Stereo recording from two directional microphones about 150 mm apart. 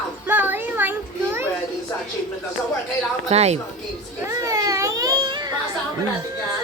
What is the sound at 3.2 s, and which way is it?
Speech, 45° right (ahead or behind).